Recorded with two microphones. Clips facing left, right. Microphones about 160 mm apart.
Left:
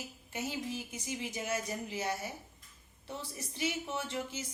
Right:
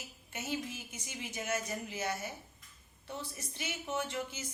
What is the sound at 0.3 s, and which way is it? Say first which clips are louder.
Speech: left 1 dB; 35° left (ahead or behind).